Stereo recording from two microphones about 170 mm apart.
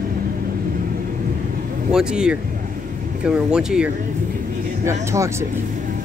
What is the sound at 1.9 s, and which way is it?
Speech, 5° right (ahead or behind).